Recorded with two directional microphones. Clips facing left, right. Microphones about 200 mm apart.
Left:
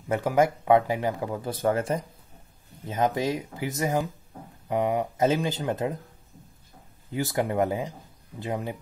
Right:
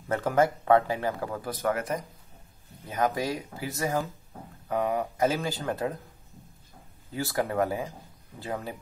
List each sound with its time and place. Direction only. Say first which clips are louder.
0.1 s speech: left 2 dB; 10° left (ahead or behind)
7.1 s speech: left 2 dB; 20° left (ahead or behind)